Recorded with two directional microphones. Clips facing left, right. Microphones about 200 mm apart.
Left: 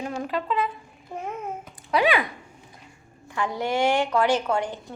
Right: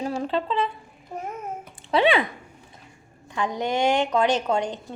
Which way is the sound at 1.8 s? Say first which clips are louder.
Right 2 dB; 25° right (ahead or behind).